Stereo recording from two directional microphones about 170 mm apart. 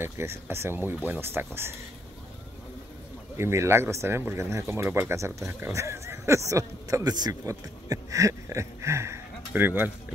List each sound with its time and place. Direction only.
0.0 s a man's voice: 15° right (ahead or behind)
3.3 s a man's voice: 15° right (ahead or behind)